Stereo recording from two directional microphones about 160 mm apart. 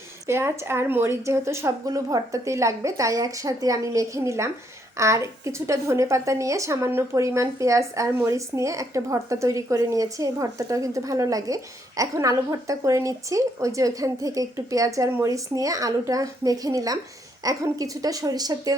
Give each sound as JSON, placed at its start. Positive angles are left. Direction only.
{"t": 0.3, "sound": "speech", "side_deg": -15}